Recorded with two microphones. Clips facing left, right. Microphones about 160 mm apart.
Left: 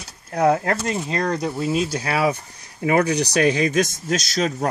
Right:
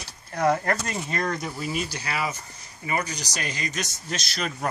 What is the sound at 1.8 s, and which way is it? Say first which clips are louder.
Speech: left 8 dB; 85° left.